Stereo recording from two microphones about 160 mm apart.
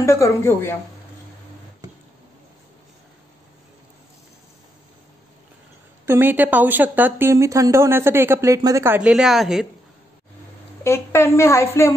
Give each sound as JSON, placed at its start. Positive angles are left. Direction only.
{"t": 0.0, "sound": "a woman's voice", "side_deg": 20}
{"t": 6.0, "sound": "a woman's voice", "side_deg": -15}
{"t": 10.8, "sound": "a woman's voice", "side_deg": 15}